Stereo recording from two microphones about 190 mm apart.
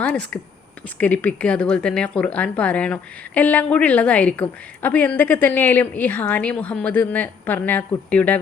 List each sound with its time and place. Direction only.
0.0 s a woman's voice: 5° left (ahead or behind)